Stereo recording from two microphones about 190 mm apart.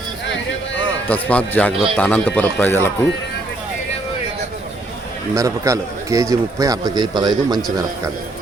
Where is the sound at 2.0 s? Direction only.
10° left (ahead or behind).